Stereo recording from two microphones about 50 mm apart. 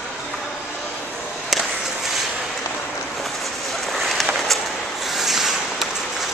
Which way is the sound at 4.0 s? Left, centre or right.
Centre.